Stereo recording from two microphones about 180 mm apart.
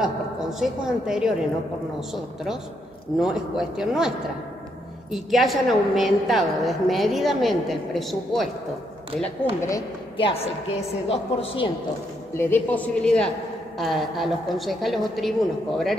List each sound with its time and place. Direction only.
0.0 s a woman's voice: centre (ahead or behind)
5.1 s a woman's voice: centre (ahead or behind)
9.6 s a woman's voice: 20° left (ahead or behind)
10.1 s a woman's voice: 30° left (ahead or behind)
12.4 s a woman's voice: 10° left (ahead or behind)